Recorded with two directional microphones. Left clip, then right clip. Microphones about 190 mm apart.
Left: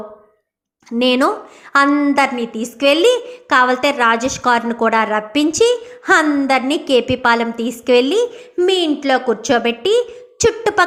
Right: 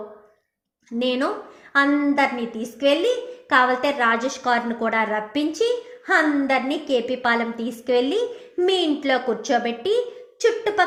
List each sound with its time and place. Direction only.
0.9 s a woman's voice: 20° left (ahead or behind)
10.3 s a woman's voice: 25° left (ahead or behind)